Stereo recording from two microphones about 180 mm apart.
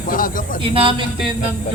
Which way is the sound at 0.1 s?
50° left (ahead or behind).